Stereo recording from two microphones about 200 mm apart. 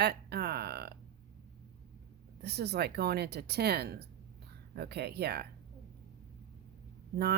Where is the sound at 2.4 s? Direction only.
55° right (ahead or behind).